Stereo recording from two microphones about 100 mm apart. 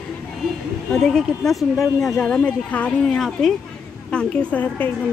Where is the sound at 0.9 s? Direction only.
5° left (ahead or behind).